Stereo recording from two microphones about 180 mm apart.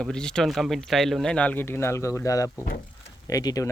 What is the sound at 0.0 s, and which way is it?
Speech, 5° left (ahead or behind).